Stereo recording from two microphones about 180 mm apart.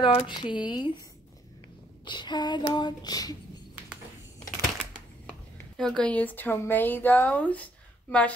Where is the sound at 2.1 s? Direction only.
25° left (ahead or behind).